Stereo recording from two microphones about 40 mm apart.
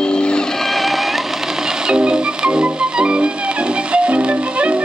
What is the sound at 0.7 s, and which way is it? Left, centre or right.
Music, centre.